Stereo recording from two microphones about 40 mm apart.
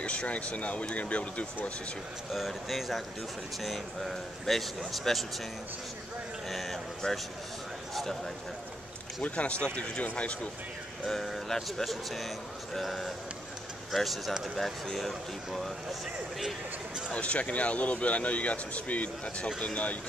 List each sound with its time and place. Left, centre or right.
0.0 s speech: left
2.3 s speech: centre
6.5 s a man's voice: centre
7.0 s speech: centre
7.9 s a sound: centre
9.2 s speech: left
11.1 s speech: centre
15.0 s speech: centre
17.1 s speech: left